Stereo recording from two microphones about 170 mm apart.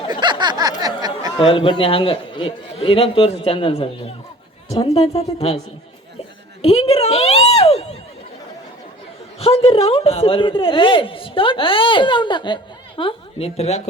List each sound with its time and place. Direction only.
0.1 s a sound: 25° right (ahead or behind)
1.4 s speech: 30° left (ahead or behind)
6.6 s speech: 35° left (ahead or behind)
9.4 s speech: 35° left (ahead or behind)